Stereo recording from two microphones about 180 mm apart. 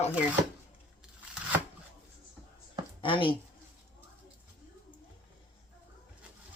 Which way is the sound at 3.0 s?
30° left (ahead or behind).